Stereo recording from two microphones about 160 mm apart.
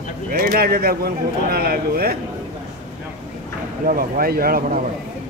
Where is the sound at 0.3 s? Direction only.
70° right (ahead or behind).